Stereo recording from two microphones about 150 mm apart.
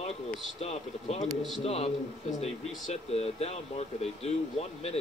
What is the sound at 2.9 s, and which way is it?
Speech, 45° left (ahead or behind).